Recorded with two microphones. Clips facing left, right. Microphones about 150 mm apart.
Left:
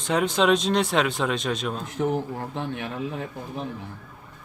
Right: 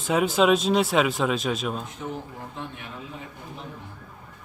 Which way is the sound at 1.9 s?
75° left (ahead or behind).